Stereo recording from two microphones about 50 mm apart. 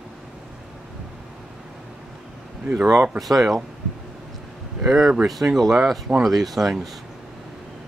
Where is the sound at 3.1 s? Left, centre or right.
Centre.